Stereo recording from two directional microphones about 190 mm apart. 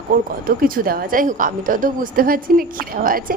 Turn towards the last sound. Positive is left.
turn(degrees=-45)  # may be behind; listen again after turning